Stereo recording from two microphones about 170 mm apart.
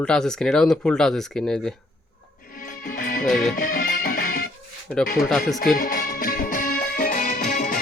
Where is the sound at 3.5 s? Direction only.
55° left (ahead or behind).